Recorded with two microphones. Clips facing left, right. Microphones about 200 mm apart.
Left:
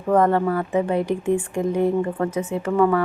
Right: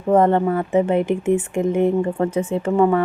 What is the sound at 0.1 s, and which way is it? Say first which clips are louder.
Speech: right 2 dB; 25° right (ahead or behind).